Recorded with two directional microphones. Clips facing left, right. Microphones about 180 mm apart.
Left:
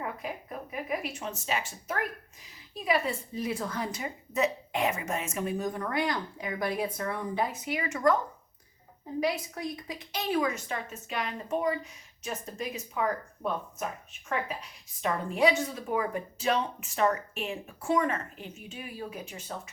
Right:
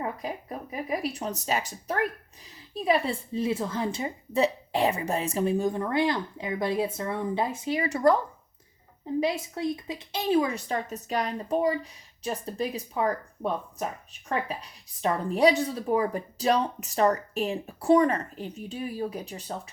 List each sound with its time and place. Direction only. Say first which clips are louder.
0.0 s a woman's voice: right 4 dB; 35° right (ahead or behind)
9.2 s speech: right 1 dB; 25° right (ahead or behind)
15.0 s speech: right 4 dB; 35° right (ahead or behind)